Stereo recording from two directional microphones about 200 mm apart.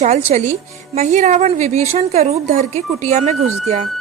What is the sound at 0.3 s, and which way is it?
Speech, 35° right (ahead or behind).